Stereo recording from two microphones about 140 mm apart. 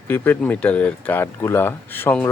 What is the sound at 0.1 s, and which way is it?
Speech, 15° left (ahead or behind).